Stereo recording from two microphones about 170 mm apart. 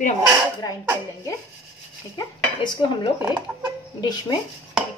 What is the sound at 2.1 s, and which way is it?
Dishes, 25° left (ahead or behind).